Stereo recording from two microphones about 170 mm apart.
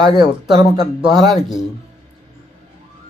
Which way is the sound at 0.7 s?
30° right (ahead or behind).